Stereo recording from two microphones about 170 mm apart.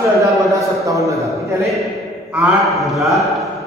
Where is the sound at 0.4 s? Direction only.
20° right (ahead or behind).